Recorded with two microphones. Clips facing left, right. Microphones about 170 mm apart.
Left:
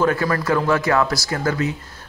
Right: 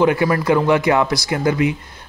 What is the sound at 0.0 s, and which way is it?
Speech, 15° right (ahead or behind).